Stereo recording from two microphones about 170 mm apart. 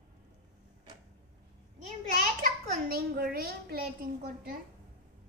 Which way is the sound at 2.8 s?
65° right (ahead or behind).